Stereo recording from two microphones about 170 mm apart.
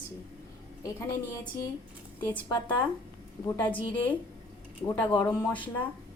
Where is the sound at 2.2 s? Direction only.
10° left (ahead or behind).